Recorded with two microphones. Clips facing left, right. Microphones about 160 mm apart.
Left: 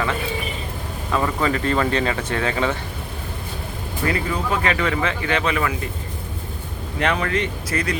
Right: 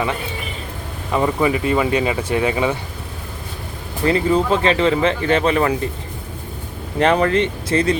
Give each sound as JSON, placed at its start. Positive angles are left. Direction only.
{"t": 1.1, "sound": "speech", "side_deg": -15}
{"t": 4.0, "sound": "speech", "side_deg": -25}
{"t": 7.0, "sound": "speech", "side_deg": -35}